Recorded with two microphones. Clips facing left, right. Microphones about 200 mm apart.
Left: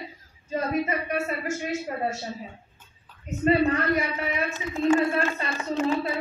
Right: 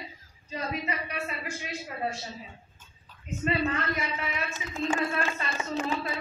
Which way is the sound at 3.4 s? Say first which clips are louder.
Left 7 dB; 35° left (ahead or behind).